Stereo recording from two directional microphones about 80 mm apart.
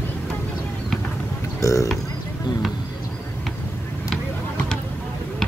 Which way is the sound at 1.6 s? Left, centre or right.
Left.